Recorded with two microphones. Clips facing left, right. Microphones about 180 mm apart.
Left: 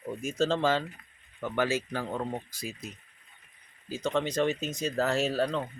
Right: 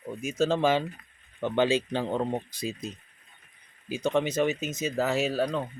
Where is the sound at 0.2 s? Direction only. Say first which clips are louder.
Right 3 dB; 5° right (ahead or behind).